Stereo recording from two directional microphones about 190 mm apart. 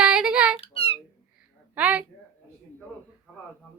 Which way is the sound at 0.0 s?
5° right (ahead or behind).